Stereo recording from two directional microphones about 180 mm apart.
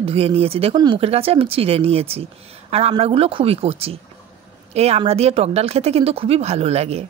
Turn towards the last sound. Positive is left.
turn(degrees=-35)  # may be behind; listen again after turning